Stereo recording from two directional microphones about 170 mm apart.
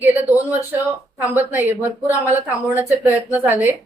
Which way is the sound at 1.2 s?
10° right (ahead or behind).